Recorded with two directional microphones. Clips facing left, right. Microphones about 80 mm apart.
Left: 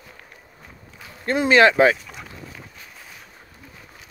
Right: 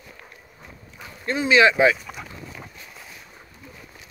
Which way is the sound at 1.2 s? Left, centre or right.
Left.